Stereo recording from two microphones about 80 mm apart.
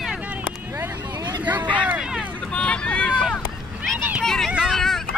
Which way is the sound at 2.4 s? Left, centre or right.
Centre.